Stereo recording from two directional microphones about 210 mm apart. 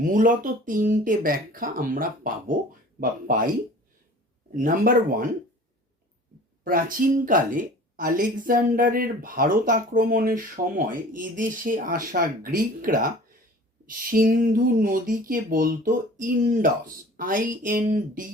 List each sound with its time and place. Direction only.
0.1 s speech: 40° right (ahead or behind)
4.5 s speech: 40° right (ahead or behind)
6.7 s speech: 40° right (ahead or behind)